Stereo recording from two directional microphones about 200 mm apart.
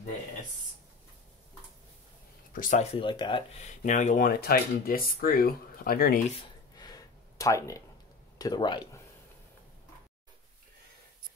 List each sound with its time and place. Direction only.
2.5 s speech: 40° left (ahead or behind); by 3.7 s 25° left (ahead or behind)
3.8 s speech: 40° left (ahead or behind)
6.8 s a sound: 20° left (ahead or behind)
8.4 s speech: 20° left (ahead or behind)